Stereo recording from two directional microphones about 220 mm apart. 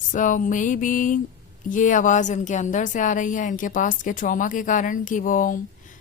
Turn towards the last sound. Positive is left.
turn(degrees=35)  # may be behind; listen again after turning